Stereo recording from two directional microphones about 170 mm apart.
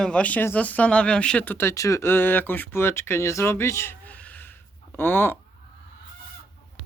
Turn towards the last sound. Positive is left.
turn(degrees=10)  # may be behind; listen again after turning